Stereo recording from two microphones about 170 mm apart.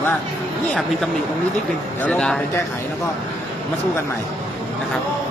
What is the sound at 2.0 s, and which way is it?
Speech, 5° left (ahead or behind).